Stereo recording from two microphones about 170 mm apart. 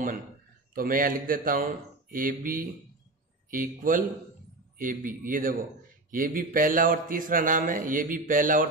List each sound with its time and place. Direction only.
0.7 s a man's voice: 55° right (ahead or behind)